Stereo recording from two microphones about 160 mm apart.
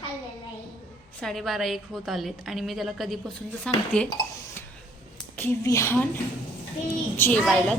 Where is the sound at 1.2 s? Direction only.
Centre (ahead or behind).